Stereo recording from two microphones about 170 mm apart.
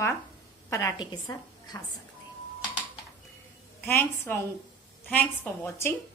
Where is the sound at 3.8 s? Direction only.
15° left (ahead or behind).